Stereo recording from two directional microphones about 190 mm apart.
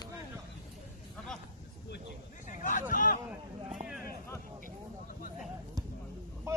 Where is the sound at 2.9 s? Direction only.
45° left (ahead or behind).